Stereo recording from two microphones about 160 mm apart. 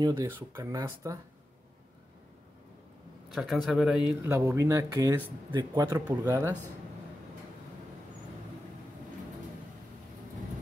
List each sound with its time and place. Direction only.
0.0 s speech: 20° right (ahead or behind)
3.3 s speech: centre (ahead or behind)
4.2 s speech: 20° right (ahead or behind)